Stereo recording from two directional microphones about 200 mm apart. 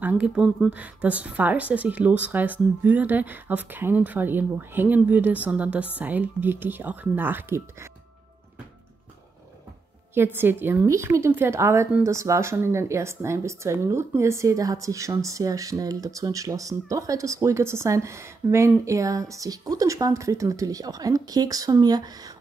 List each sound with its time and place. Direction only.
0.0 s a woman's voice: 5° right (ahead or behind)
10.1 s a woman's voice: 10° right (ahead or behind)